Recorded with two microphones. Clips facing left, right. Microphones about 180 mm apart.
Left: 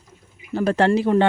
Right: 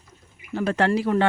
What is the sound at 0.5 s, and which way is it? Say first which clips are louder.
Speech: left 4 dB; 35° left (ahead or behind).